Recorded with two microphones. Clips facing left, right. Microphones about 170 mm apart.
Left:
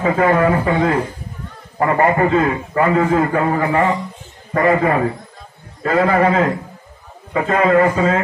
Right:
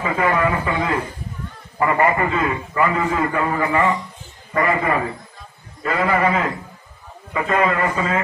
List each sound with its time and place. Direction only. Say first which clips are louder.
0.0 s a man's voice: left 5 dB; 45° left (ahead or behind)